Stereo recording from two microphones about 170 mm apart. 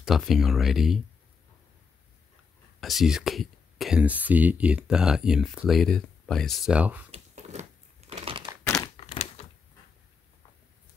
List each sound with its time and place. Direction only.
0.0 s speech: centre (ahead or behind)
2.8 s speech: centre (ahead or behind)
7.1 s a sound: 40° right (ahead or behind)
9.0 s typewriter: 40° left (ahead or behind)